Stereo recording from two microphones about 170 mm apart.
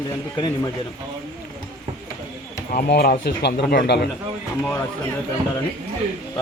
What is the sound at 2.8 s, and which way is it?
Speech, 70° left (ahead or behind).